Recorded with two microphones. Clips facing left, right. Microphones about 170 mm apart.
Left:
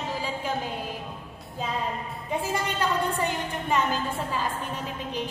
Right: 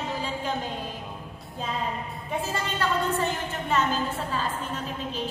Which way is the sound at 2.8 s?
15° left (ahead or behind).